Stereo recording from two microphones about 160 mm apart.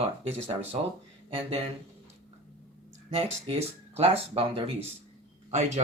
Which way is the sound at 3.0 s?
40° right (ahead or behind).